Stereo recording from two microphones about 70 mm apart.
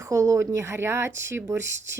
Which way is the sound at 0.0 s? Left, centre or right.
Right.